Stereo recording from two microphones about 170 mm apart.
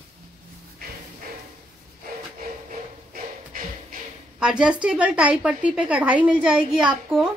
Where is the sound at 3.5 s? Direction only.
55° right (ahead or behind).